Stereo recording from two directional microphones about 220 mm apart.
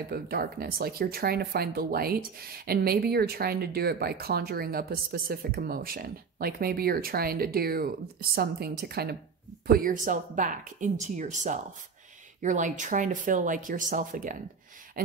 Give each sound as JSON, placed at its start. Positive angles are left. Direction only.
{"t": 0.1, "sound": "speech", "side_deg": -45}